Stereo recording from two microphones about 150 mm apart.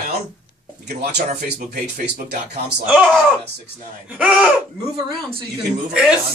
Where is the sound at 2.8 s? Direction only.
10° right (ahead or behind).